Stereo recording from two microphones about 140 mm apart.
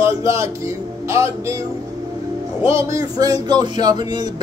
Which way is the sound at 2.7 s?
20° right (ahead or behind).